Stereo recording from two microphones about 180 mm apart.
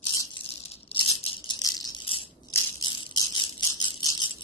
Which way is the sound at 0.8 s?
30° left (ahead or behind).